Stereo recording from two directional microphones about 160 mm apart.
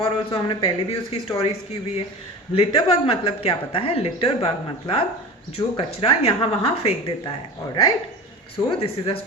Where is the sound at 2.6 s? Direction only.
35° left (ahead or behind).